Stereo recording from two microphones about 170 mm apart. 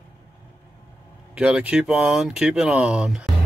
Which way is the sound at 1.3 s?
5° right (ahead or behind).